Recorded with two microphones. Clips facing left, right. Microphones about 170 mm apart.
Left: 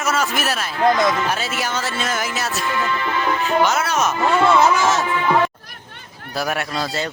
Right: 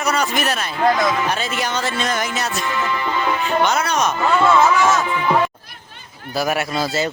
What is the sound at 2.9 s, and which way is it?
Music, 15° right (ahead or behind).